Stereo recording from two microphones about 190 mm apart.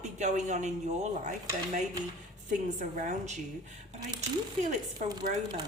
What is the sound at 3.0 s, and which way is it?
Speech, 40° right (ahead or behind).